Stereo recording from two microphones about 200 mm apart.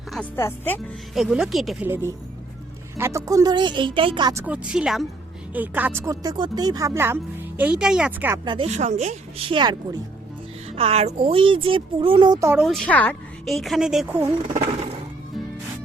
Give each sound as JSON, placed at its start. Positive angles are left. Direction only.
{"t": 0.1, "sound": "speech", "side_deg": 10}
{"t": 1.1, "sound": "a woman's voice", "side_deg": 0}
{"t": 4.4, "sound": "a woman's voice", "side_deg": -5}
{"t": 8.4, "sound": "a woman's voice", "side_deg": -30}
{"t": 12.6, "sound": "a woman's voice", "side_deg": 5}